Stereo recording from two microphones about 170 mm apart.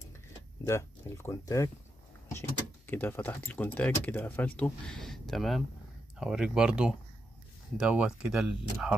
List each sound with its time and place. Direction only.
0.7 s speech: 15° left (ahead or behind)
2.9 s speech: 10° left (ahead or behind)